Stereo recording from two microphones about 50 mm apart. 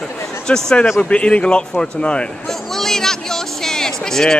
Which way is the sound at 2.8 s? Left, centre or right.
Centre.